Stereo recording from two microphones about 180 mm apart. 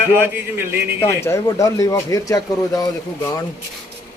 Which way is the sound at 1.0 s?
15° left (ahead or behind).